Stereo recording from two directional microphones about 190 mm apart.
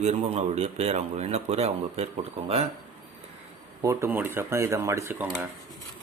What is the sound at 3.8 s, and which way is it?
Speech, 15° right (ahead or behind).